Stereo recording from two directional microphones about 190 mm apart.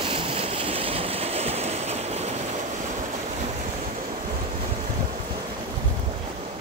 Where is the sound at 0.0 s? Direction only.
30° right (ahead or behind).